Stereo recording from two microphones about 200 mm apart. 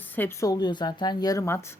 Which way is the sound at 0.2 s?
15° left (ahead or behind).